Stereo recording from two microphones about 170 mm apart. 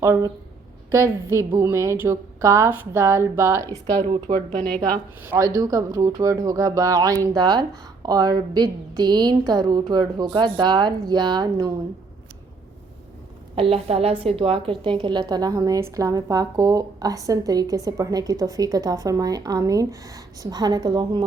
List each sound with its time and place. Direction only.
0.0 s a woman's voice: 15° right (ahead or behind)
4.0 s speech: 30° right (ahead or behind)
5.2 s a woman's voice: 15° right (ahead or behind)
13.6 s a woman's voice: 35° right (ahead or behind)